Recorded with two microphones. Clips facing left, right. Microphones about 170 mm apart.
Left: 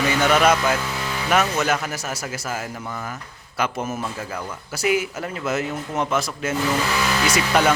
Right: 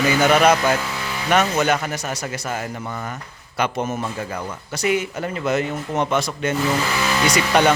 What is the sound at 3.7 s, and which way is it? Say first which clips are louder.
Speech: right 3 dB; 30° right (ahead or behind).